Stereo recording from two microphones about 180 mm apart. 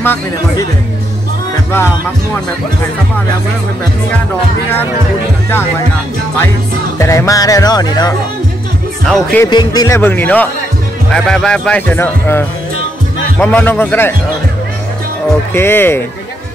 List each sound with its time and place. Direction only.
0.0 s speech: 10° left (ahead or behind)
7.0 s speech: 15° left (ahead or behind)
9.0 s speech: 5° left (ahead or behind)
9.4 s speech: 25° left (ahead or behind)
15.5 s speech: 10° left (ahead or behind)